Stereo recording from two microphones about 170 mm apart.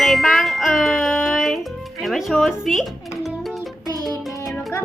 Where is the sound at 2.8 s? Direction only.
Centre (ahead or behind).